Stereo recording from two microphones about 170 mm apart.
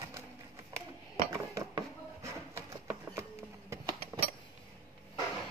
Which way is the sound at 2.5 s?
15° right (ahead or behind).